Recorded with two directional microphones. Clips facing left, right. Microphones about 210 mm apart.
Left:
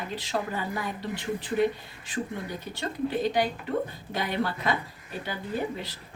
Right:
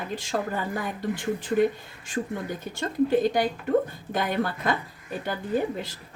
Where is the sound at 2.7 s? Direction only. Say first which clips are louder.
Right 7 dB; 45° right (ahead or behind).